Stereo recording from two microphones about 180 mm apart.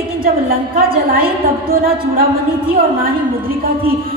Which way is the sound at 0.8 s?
55° right (ahead or behind).